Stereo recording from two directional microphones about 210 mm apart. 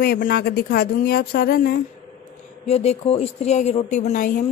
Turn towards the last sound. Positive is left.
turn(degrees=40)  # may be behind; listen again after turning